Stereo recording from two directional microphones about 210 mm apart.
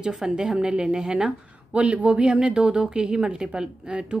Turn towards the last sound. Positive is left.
turn(degrees=-5)  # may be behind; listen again after turning